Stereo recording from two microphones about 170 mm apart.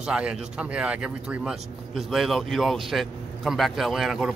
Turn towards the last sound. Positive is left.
turn(degrees=0)  # may be behind; listen again after turning